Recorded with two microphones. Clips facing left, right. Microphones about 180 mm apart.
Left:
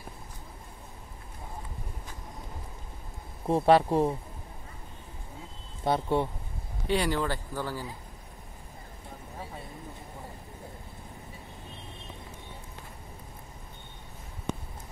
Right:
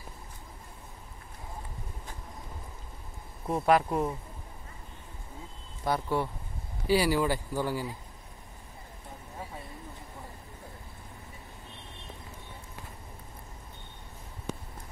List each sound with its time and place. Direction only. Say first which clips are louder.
3.4 s speech: left 3 dB; 30° left (ahead or behind)
5.9 s speech: left 3 dB; 25° left (ahead or behind)
6.9 s speech: right 3 dB; 5° right (ahead or behind)